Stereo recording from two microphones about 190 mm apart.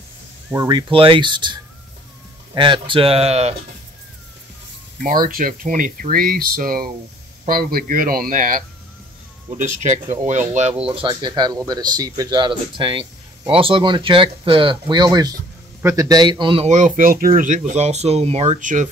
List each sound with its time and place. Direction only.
0.5 s speech: 20° right (ahead or behind)
5.0 s speech: 45° right (ahead or behind)